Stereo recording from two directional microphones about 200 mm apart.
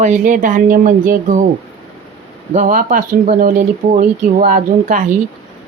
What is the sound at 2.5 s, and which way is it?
Speech, 40° right (ahead or behind).